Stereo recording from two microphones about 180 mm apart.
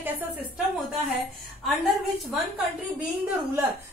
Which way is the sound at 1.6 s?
Centre (ahead or behind).